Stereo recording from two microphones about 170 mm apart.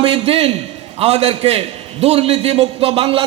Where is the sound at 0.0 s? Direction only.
35° right (ahead or behind).